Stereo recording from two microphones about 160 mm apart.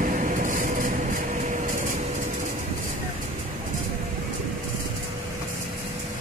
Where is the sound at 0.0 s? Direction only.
55° right (ahead or behind).